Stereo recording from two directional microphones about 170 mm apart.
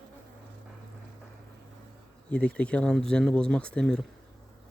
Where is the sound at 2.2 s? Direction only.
10° left (ahead or behind).